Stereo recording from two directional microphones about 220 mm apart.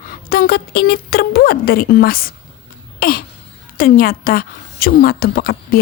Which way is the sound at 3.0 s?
40° left (ahead or behind).